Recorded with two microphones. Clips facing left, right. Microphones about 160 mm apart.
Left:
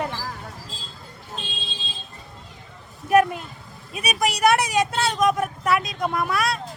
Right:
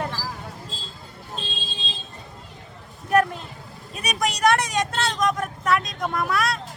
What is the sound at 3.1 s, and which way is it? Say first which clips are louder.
Speech: left 3 dB; 10° left (ahead or behind).